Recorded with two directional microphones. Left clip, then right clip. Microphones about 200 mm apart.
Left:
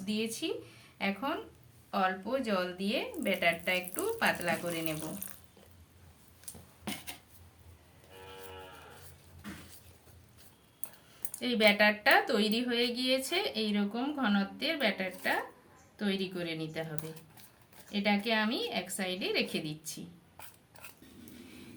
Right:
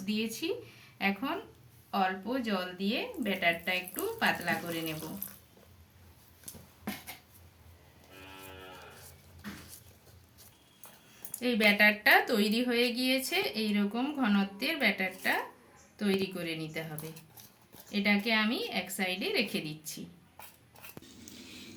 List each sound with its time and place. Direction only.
0.0 s speech: 10° left (ahead or behind)
11.3 s speech: 5° left (ahead or behind)
17.9 s speech: 10° left (ahead or behind)